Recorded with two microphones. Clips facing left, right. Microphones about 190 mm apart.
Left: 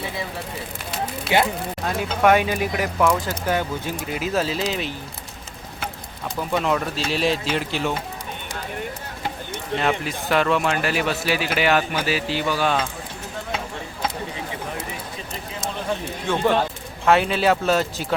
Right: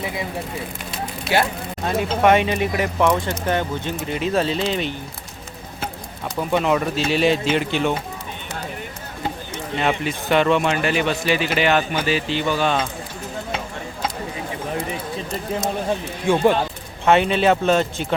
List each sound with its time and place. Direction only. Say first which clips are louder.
1.3 s speech: even; 15° left (ahead or behind)
1.9 s speech: right 2 dB; centre (ahead or behind)
6.5 s speech: right 3 dB; 5° right (ahead or behind)
9.7 s speech: right 1 dB; centre (ahead or behind)
16.3 s speech: right 5 dB; 10° right (ahead or behind)
17.1 s speech: right 2 dB; centre (ahead or behind)